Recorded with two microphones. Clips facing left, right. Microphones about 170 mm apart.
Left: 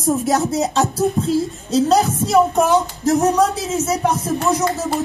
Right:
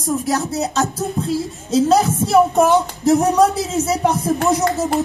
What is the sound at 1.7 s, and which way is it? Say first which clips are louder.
Music: right 1 dB; centre (ahead or behind).